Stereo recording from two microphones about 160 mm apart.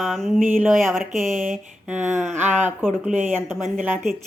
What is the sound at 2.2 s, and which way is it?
Speech, 50° right (ahead or behind).